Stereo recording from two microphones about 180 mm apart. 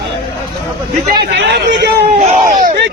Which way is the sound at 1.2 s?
70° right (ahead or behind).